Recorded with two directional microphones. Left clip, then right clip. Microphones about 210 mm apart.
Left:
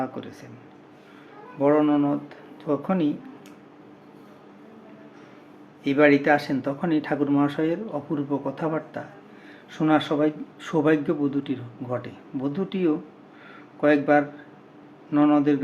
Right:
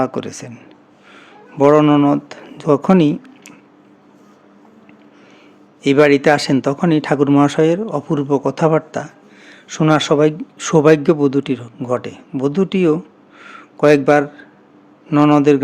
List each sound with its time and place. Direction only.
0.0 s speech: 55° right (ahead or behind)
1.5 s speech: 55° right (ahead or behind)
5.8 s speech: 55° right (ahead or behind)
13.4 s a sound: 55° right (ahead or behind)
15.1 s speech: 50° right (ahead or behind)